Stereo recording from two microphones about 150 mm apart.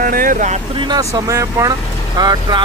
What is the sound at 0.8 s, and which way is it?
Speech, 30° right (ahead or behind).